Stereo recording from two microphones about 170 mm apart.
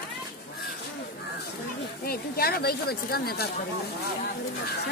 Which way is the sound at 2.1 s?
65° left (ahead or behind).